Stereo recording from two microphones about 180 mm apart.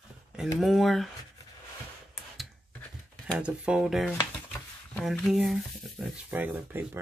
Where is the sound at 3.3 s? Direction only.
5° right (ahead or behind).